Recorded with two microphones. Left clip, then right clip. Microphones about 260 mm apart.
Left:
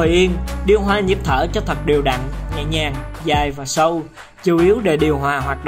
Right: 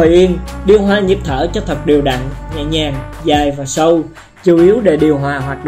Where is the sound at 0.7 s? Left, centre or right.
Left.